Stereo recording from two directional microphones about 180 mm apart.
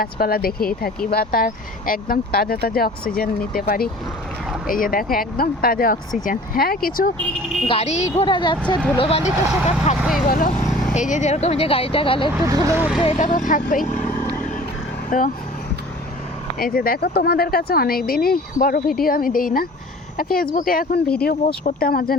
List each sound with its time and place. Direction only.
0.0 s speech: 55° left (ahead or behind)
7.7 s speech: 35° left (ahead or behind)
10.0 s speech: centre (ahead or behind)
10.2 s speech: 50° left (ahead or behind); by 12.3 s 30° left (ahead or behind)
12.5 s speech: 15° right (ahead or behind)
13.0 s speech: 30° left (ahead or behind)
13.2 s speech: 45° left (ahead or behind)
16.6 s speech: 55° left (ahead or behind)